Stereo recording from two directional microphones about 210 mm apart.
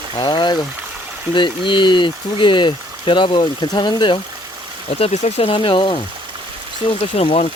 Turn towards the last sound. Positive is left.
turn(degrees=30)  # may be behind; listen again after turning